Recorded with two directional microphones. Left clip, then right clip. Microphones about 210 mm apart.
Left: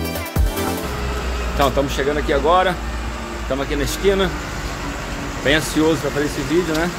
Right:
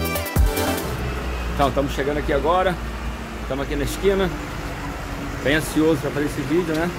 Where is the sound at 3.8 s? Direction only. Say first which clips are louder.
Left 2 dB; 5° left (ahead or behind).